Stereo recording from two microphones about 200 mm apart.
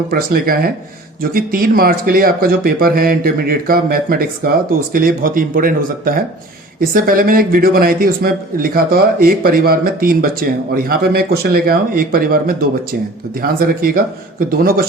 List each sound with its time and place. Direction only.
0.1 s speech: 50° right (ahead or behind)